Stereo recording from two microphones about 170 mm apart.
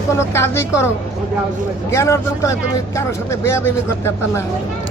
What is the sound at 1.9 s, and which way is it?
Speech, 15° left (ahead or behind).